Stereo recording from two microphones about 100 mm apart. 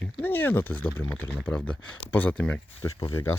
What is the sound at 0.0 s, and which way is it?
Speech, 20° left (ahead or behind).